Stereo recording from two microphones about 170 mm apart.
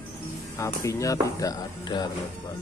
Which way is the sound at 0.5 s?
20° left (ahead or behind).